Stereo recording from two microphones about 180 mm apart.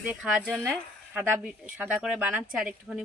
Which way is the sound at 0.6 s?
10° right (ahead or behind).